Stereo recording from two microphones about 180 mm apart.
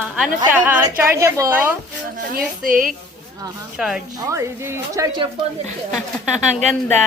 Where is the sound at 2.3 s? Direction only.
50° right (ahead or behind).